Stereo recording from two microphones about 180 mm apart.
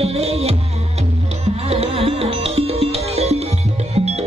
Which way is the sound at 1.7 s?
35° right (ahead or behind).